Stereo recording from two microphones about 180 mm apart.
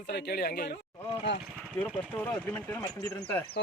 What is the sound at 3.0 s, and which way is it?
Speech, 20° left (ahead or behind).